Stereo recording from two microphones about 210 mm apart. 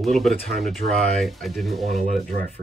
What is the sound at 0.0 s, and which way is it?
Speech, centre (ahead or behind).